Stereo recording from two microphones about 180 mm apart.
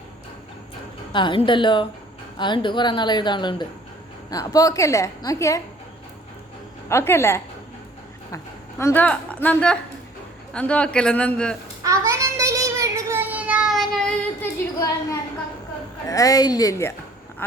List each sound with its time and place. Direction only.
1.1 s a woman's voice: 25° left (ahead or behind)
6.8 s a man's voice: 15° left (ahead or behind)
8.8 s a man's voice: 10° left (ahead or behind)
11.8 s child singing: 20° right (ahead or behind); by 14.1 s centre (ahead or behind)
14.6 s a sound: 15° left (ahead or behind)
16.0 s a woman's voice: 20° left (ahead or behind)